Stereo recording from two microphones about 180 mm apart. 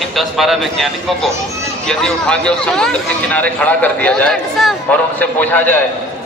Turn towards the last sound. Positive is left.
turn(degrees=10)  # may be behind; listen again after turning